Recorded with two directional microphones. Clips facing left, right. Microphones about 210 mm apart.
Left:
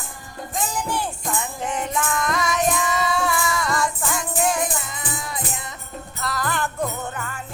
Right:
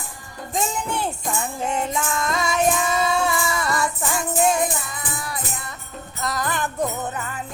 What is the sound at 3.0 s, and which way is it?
Music, 25° right (ahead or behind).